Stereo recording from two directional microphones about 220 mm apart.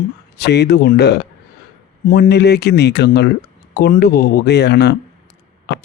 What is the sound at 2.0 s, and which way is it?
Speech, 40° left (ahead or behind).